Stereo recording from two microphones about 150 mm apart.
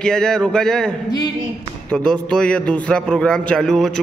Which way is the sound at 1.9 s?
5° left (ahead or behind).